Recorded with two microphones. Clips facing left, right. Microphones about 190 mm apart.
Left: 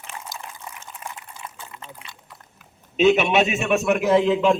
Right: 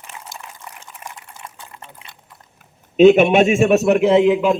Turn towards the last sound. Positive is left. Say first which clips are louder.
# right 5 dB
turn(degrees=-20)  # may be behind; listen again after turning